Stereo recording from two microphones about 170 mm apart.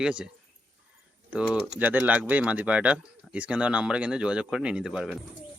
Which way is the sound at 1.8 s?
10° right (ahead or behind).